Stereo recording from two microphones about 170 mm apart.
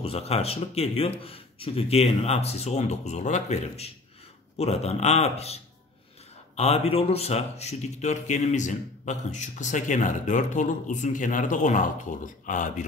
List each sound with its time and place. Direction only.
0.0 s speech: 35° left (ahead or behind)